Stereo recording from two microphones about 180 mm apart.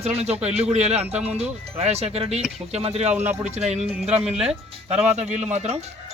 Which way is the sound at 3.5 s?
40° right (ahead or behind).